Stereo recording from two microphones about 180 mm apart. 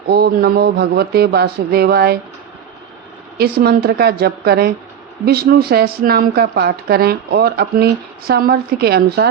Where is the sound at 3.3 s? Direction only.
60° right (ahead or behind).